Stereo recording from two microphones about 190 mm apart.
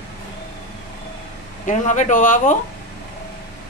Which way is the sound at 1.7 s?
40° left (ahead or behind).